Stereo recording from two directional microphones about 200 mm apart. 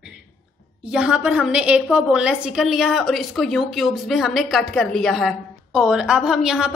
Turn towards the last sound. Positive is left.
turn(degrees=0)  # may be behind; listen again after turning